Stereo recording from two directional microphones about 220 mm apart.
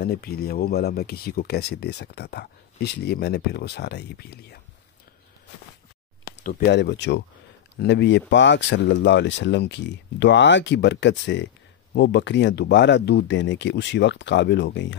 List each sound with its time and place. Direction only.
0.0 s speech: 45° left (ahead or behind)
6.2 s speech: 45° left (ahead or behind)